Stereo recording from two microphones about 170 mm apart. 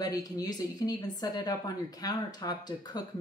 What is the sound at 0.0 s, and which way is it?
A woman's voice, 20° left (ahead or behind).